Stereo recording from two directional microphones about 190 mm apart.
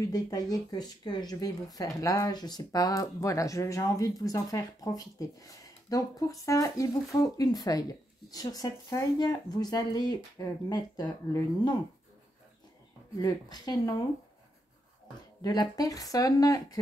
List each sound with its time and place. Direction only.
0.0 s speech: 20° left (ahead or behind)
13.2 s speech: 20° left (ahead or behind)
15.4 s speech: 20° left (ahead or behind)